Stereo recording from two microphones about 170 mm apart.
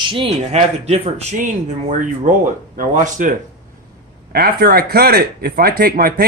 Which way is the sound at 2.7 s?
50° right (ahead or behind).